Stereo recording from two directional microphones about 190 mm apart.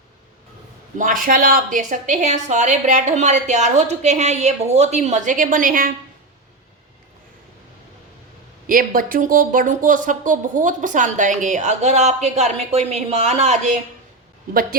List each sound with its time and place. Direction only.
0.9 s speech: 45° right (ahead or behind)
8.6 s speech: 45° right (ahead or behind)
14.5 s speech: 50° right (ahead or behind)